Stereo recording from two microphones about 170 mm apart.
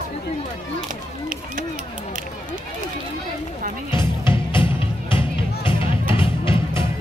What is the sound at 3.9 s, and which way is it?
Music, 30° left (ahead or behind).